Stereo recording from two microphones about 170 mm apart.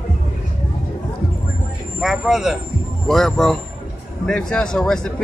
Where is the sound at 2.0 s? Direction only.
Centre (ahead or behind).